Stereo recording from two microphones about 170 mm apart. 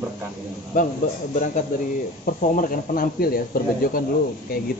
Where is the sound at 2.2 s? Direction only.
50° left (ahead or behind).